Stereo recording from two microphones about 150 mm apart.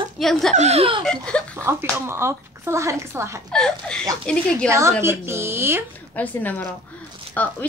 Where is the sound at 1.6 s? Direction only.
15° right (ahead or behind).